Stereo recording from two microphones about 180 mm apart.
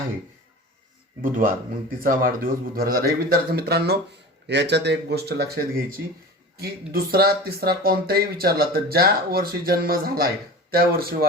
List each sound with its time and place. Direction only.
1.2 s speech: 50° right (ahead or behind)